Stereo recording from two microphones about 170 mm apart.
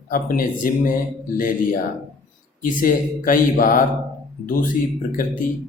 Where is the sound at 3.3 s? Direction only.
55° left (ahead or behind).